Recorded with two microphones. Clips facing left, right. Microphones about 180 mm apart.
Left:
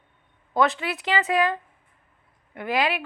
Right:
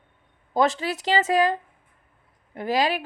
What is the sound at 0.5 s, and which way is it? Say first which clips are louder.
A woman's voice: right 1 dB; 40° right (ahead or behind).